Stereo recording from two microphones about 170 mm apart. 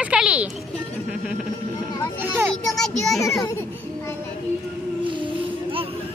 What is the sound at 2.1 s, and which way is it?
Speech, 15° right (ahead or behind).